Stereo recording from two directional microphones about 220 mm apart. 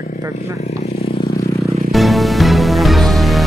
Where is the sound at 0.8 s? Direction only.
25° left (ahead or behind).